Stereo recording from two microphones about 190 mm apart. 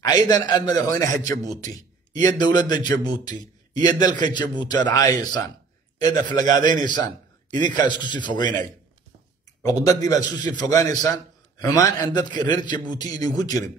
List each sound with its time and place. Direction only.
0.0 s a man's voice: 20° left (ahead or behind)
2.2 s a man's voice: 20° left (ahead or behind)
9.6 s a man's voice: 20° left (ahead or behind)